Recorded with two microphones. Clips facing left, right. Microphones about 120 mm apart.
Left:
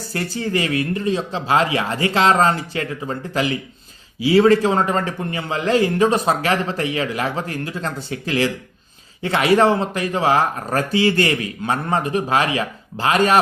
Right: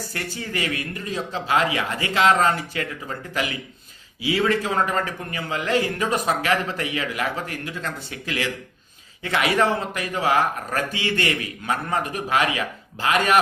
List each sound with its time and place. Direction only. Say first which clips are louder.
0.1 s a man's voice: left 11 dB; 30° left (ahead or behind)